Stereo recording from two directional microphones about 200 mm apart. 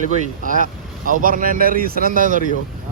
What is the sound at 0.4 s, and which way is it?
Speech, 40° right (ahead or behind).